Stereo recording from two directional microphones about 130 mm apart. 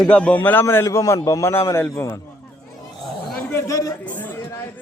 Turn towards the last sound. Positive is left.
turn(degrees=15)  # may be behind; listen again after turning